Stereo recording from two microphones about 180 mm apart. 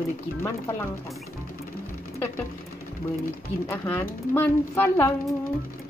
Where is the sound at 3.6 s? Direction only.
15° left (ahead or behind).